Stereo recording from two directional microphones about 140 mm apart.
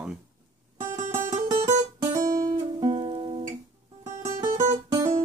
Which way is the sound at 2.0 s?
25° right (ahead or behind).